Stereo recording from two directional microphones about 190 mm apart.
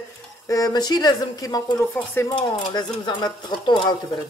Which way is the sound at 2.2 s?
25° left (ahead or behind).